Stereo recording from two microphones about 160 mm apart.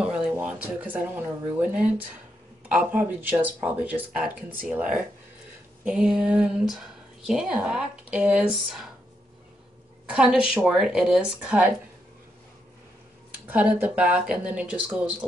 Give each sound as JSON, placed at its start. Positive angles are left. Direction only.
{"t": 0.0, "sound": "a sound", "side_deg": -10}
{"t": 1.6, "sound": "speech", "side_deg": -10}
{"t": 10.1, "sound": "speech", "side_deg": -5}
{"t": 13.5, "sound": "speech", "side_deg": -10}